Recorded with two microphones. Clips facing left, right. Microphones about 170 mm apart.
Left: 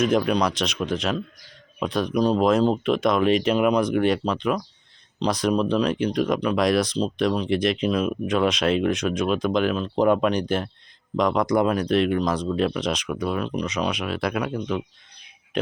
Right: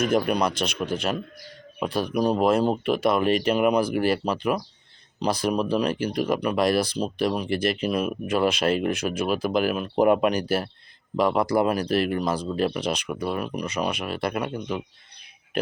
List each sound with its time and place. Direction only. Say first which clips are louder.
0.0 s speech: left 2 dB; 5° right (ahead or behind)